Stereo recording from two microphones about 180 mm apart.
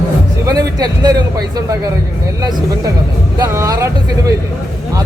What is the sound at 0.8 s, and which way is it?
Speech, 20° right (ahead or behind).